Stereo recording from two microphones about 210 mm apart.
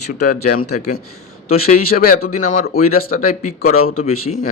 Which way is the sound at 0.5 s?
90° left.